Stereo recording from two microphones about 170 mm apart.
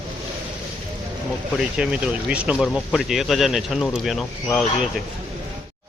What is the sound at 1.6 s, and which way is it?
Speech, 5° right (ahead or behind).